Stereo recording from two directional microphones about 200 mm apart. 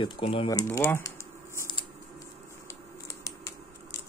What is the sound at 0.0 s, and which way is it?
Speech, 30° left (ahead or behind).